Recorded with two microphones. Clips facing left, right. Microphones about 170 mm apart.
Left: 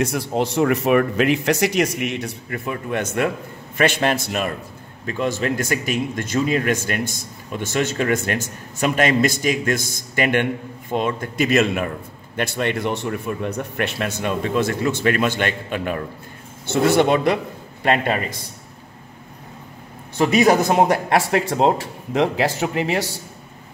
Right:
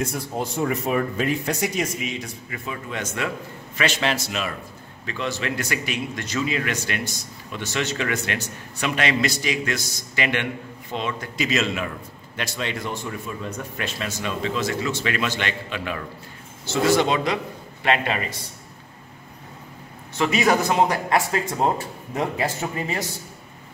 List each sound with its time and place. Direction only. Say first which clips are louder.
0.0 s a man's voice: left 6 dB; 80° left; by 16.0 s 50° left (ahead or behind)
16.6 s a man's voice: left 3 dB; 60° left (ahead or behind)
20.2 s a man's voice: left 5 dB; 40° left (ahead or behind)
20.9 s speech: left 4 dB; 70° left (ahead or behind)
21.6 s speech: left 5 dB; 85° left